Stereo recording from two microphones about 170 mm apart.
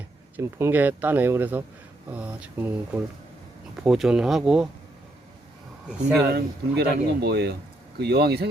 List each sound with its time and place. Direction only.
0.3 s speech: 15° right (ahead or behind)
6.2 s speech: 70° right (ahead or behind)